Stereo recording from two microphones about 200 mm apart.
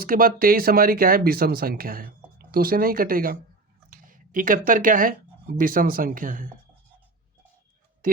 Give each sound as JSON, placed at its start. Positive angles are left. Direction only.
{"t": 0.0, "sound": "speech", "side_deg": -45}